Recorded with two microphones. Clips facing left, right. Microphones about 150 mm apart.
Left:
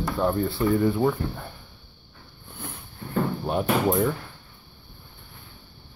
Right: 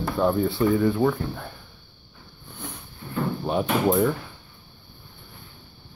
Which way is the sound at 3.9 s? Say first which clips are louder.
Right 2 dB; centre (ahead or behind).